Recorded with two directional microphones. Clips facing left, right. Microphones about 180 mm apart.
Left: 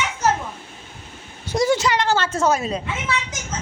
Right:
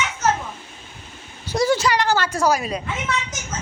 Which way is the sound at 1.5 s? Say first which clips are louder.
Even; 20° left (ahead or behind).